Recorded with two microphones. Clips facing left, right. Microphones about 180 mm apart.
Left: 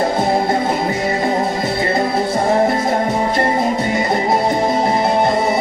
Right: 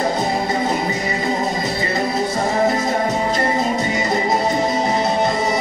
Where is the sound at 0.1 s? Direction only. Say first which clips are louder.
Left 4 dB; 55° left (ahead or behind).